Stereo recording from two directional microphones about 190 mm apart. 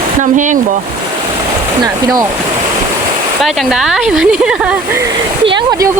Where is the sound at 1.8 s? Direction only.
20° right (ahead or behind).